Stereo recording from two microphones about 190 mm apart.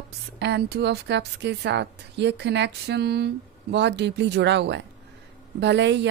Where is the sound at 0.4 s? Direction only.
65° right (ahead or behind).